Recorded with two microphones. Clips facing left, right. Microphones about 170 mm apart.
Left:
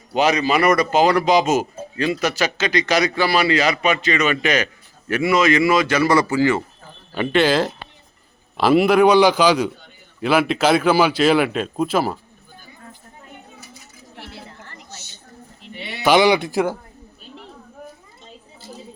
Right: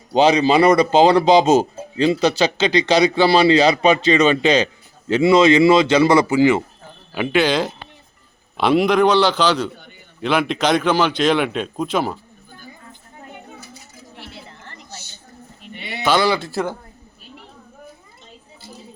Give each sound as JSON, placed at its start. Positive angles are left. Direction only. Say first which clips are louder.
{"t": 0.1, "sound": "speech", "louder": "right 4 dB", "side_deg": -30}
{"t": 7.1, "sound": "a man's voice", "louder": "left 1 dB", "side_deg": -5}
{"t": 16.0, "sound": "a man's voice", "louder": "left 3 dB", "side_deg": 15}